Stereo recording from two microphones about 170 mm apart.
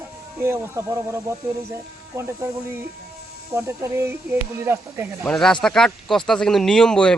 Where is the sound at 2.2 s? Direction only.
15° right (ahead or behind).